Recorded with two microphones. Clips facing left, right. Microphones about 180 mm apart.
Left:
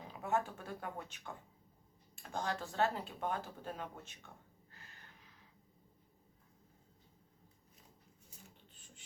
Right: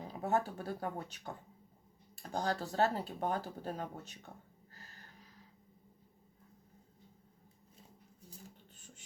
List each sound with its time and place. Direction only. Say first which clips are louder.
0.1 s speech: right 3 dB; 40° right (ahead or behind)
4.7 s a sound: right 3 dB; 40° right (ahead or behind)
8.3 s filing: right 6 dB; 40° right (ahead or behind)